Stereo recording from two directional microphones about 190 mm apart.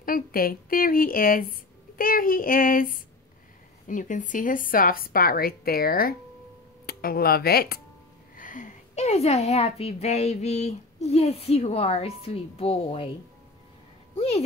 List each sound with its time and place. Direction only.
0.0 s speech: 50° left (ahead or behind)
8.4 s a woman's voice: 40° left (ahead or behind)
14.1 s a sound: 30° left (ahead or behind)